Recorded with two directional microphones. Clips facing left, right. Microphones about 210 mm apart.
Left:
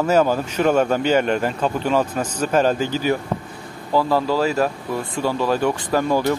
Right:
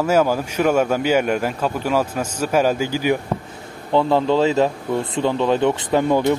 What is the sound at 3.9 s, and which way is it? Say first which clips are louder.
Speech: right 2 dB; 25° right (ahead or behind).